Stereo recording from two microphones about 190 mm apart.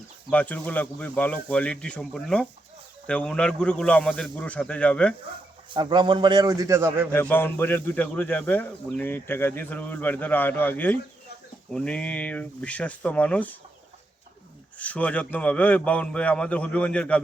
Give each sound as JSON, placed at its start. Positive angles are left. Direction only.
{"t": 0.3, "sound": "a man's voice", "side_deg": 10}
{"t": 5.7, "sound": "a man's voice", "side_deg": -25}
{"t": 7.1, "sound": "a man's voice", "side_deg": 10}
{"t": 14.8, "sound": "a man's voice", "side_deg": 5}